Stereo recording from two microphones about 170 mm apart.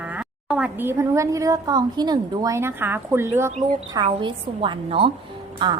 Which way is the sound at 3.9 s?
30° right (ahead or behind).